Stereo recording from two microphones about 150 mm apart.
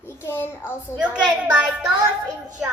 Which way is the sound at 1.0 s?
5° right (ahead or behind).